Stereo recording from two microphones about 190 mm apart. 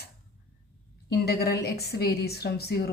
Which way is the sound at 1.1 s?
55° left (ahead or behind).